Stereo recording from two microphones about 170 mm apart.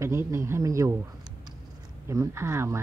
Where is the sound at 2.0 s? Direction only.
15° right (ahead or behind).